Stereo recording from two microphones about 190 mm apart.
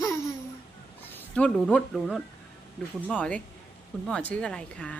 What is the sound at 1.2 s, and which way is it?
A woman's voice, 5° left (ahead or behind).